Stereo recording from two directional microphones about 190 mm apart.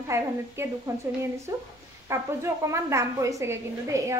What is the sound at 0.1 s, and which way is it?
A woman's voice, 15° right (ahead or behind).